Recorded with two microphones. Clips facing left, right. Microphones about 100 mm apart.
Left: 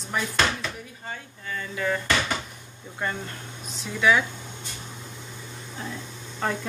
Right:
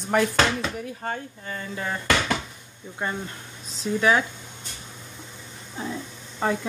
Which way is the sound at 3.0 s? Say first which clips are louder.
Right 1 dB; 20° right (ahead or behind).